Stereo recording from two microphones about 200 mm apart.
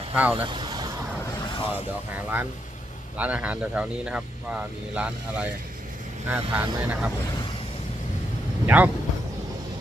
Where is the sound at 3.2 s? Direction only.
5° right (ahead or behind).